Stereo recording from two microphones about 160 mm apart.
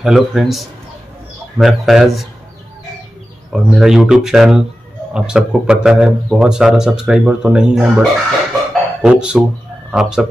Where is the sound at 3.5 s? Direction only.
Centre (ahead or behind).